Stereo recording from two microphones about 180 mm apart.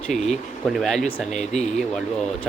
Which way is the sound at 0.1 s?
Centre (ahead or behind).